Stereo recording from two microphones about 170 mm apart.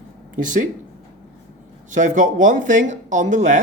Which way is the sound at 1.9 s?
45° right (ahead or behind).